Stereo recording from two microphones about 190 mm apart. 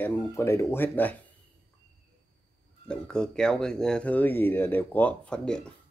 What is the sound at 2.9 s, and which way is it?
Speech, 5° left (ahead or behind).